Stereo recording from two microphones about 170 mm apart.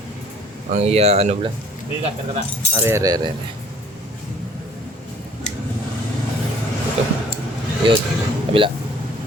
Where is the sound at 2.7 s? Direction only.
15° right (ahead or behind).